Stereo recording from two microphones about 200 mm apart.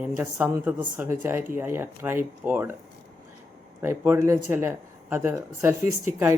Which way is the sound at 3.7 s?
10° right (ahead or behind).